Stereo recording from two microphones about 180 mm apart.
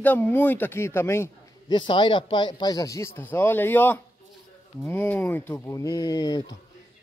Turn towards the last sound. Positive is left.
turn(degrees=20)  # may be behind; listen again after turning